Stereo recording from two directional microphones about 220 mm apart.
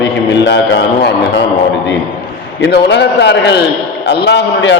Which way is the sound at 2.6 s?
50° left (ahead or behind).